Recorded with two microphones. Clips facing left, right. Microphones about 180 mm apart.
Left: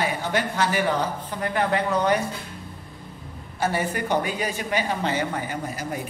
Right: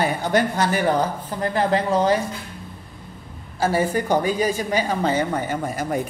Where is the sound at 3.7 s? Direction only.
40° right (ahead or behind).